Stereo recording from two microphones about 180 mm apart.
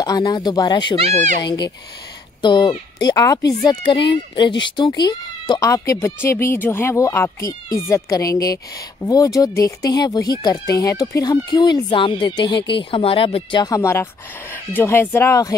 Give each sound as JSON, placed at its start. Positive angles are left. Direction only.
{"t": 0.0, "sound": "speech", "side_deg": 20}
{"t": 0.9, "sound": "speech", "side_deg": -35}
{"t": 1.4, "sound": "speech", "side_deg": 25}